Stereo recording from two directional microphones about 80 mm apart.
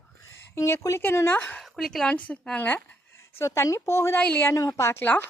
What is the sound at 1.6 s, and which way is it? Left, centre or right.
A woman's voice, centre.